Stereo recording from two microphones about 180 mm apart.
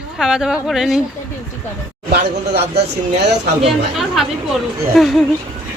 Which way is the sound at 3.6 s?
Centre (ahead or behind).